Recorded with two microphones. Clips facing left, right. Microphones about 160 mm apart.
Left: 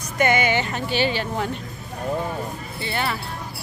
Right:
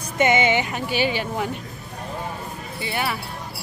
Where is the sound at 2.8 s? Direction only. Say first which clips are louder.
Even; 10° right (ahead or behind).